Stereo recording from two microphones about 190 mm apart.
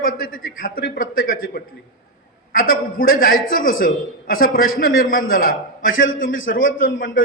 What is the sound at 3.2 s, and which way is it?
Speech, 50° left (ahead or behind).